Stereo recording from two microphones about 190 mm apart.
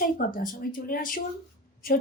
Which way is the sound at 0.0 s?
50° left (ahead or behind).